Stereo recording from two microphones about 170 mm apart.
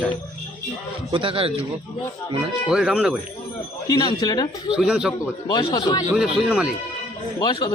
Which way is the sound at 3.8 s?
25° left (ahead or behind).